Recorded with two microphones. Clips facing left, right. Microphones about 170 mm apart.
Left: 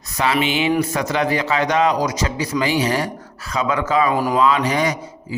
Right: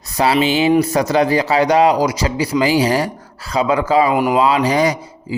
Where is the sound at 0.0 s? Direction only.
35° right (ahead or behind).